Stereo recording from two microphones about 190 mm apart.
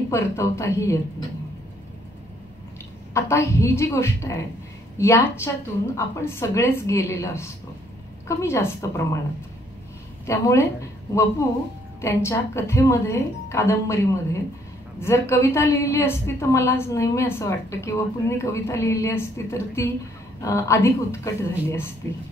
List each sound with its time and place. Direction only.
0.1 s a woman's voice: 15° left (ahead or behind)
3.2 s a woman's voice: 15° left (ahead or behind)
10.2 s a woman's voice: 15° left (ahead or behind)